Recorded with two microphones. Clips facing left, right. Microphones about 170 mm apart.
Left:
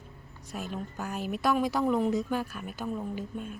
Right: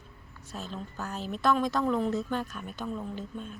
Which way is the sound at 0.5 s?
15° left (ahead or behind).